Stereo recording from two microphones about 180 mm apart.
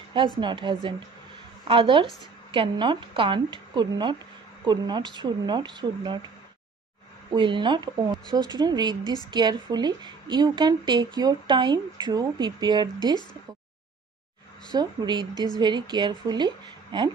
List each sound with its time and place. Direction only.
0.4 s a woman's voice: 25° right (ahead or behind)
7.3 s a woman's voice: 25° right (ahead or behind)
9.0 s a woman's voice: 20° left (ahead or behind)
9.3 s a woman's voice: 25° right (ahead or behind)
14.7 s a woman's voice: 25° right (ahead or behind)
15.3 s a woman's voice: 20° left (ahead or behind)
15.6 s a woman's voice: 25° right (ahead or behind)